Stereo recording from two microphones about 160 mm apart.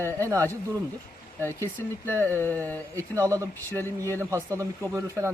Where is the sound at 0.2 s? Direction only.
20° right (ahead or behind).